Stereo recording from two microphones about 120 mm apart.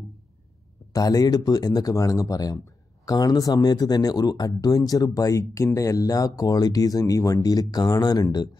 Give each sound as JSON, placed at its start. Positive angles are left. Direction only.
{"t": 0.9, "sound": "speech", "side_deg": 30}